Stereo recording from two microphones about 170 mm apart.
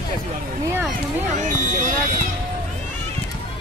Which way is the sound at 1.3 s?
45° right (ahead or behind).